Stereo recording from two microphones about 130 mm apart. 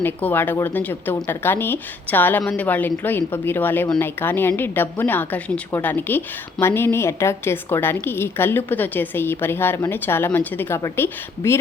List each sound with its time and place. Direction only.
0.0 s a woman's voice: 15° left (ahead or behind)